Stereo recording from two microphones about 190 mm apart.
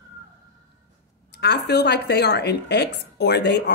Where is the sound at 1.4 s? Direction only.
60° left (ahead or behind).